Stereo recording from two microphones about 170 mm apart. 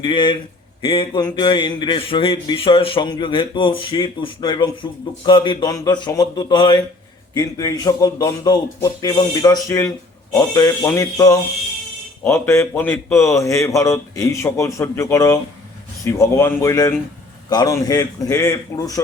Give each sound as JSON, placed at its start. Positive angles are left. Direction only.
{"t": 0.0, "sound": "a man's voice", "side_deg": 30}